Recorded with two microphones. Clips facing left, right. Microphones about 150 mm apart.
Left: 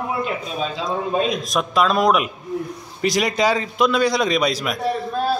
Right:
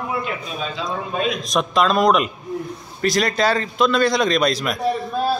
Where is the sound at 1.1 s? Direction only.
35° left (ahead or behind).